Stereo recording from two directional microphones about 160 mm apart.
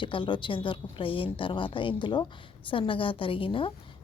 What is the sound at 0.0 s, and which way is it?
A woman's voice, 30° left (ahead or behind).